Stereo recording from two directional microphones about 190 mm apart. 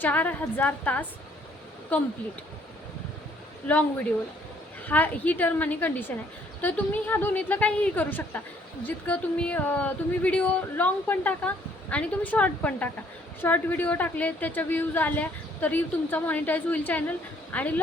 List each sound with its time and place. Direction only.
0.0 s a woman's voice: 10° left (ahead or behind)
4.9 s a woman's voice: 10° left (ahead or behind)